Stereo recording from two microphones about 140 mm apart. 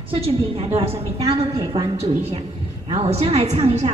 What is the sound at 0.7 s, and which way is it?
A woman's voice, 45° right (ahead or behind).